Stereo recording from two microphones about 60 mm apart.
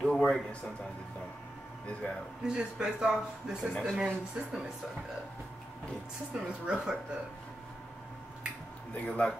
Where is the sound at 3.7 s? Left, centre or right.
Centre.